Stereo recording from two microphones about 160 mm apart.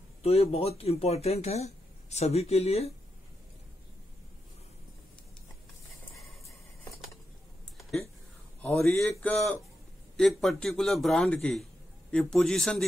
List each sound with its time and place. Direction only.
0.2 s speech: 40° left (ahead or behind)
8.6 s speech: 10° left (ahead or behind)
10.1 s a man's voice: centre (ahead or behind)